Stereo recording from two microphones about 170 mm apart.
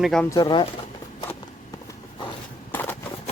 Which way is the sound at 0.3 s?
25° left (ahead or behind).